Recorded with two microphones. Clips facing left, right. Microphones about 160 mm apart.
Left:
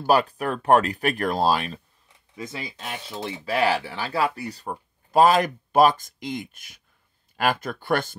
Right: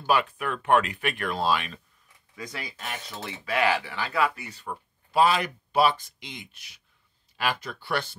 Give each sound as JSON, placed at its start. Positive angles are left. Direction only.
{"t": 0.0, "sound": "speech", "side_deg": 40}
{"t": 2.3, "sound": "speech", "side_deg": 25}